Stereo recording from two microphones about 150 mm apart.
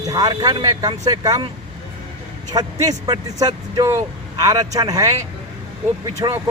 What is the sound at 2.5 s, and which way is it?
Speech, 25° right (ahead or behind).